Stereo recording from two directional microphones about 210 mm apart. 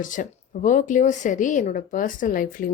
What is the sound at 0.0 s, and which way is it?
A woman's voice, 40° left (ahead or behind).